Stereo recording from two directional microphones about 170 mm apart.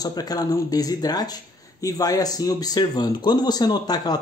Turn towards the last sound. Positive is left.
turn(degrees=25)  # may be behind; listen again after turning